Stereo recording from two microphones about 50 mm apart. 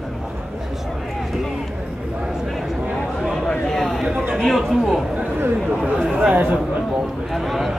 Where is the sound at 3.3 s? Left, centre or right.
Centre.